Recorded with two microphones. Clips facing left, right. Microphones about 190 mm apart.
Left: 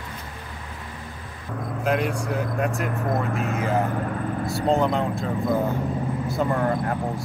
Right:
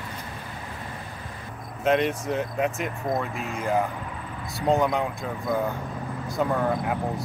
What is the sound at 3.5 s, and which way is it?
Speech, 55° left (ahead or behind).